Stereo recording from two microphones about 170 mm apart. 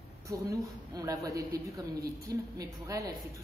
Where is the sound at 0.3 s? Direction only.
20° right (ahead or behind).